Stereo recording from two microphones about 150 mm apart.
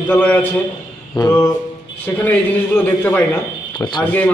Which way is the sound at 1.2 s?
30° left (ahead or behind).